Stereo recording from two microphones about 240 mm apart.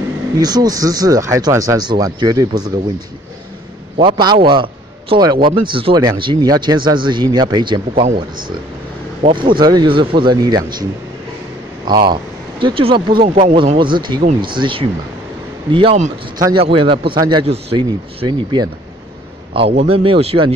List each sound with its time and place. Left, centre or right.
0.4 s speech: centre
4.0 s speech: centre
8.0 s speech: right
9.2 s speech: centre
11.9 s speech: centre
19.7 s speech: right